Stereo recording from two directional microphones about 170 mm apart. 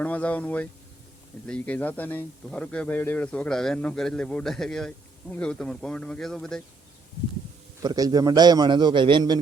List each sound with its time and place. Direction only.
0.0 s a man's voice: 10° left (ahead or behind)
7.8 s a man's voice: 20° right (ahead or behind)